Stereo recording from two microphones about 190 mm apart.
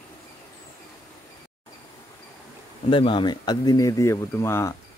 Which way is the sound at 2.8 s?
25° left (ahead or behind).